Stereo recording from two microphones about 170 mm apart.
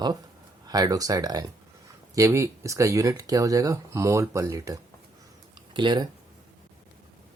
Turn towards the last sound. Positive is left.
turn(degrees=-25)  # may be behind; listen again after turning